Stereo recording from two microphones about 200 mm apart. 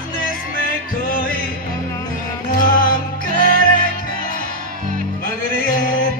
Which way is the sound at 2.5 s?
45° left (ahead or behind).